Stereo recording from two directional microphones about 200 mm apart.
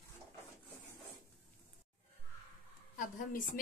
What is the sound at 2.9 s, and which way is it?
Speech, 40° left (ahead or behind).